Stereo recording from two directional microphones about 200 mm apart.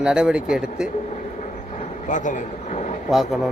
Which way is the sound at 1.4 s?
35° left (ahead or behind).